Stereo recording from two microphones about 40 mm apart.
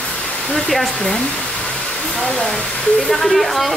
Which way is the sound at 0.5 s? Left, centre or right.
Centre.